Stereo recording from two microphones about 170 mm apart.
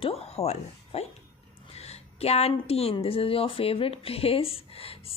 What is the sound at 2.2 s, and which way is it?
Speech, 35° left (ahead or behind).